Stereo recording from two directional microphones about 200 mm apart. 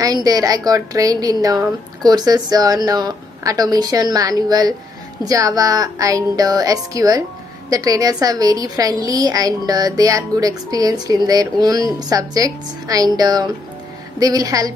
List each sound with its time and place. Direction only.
0.0 s a woman's voice: 20° right (ahead or behind)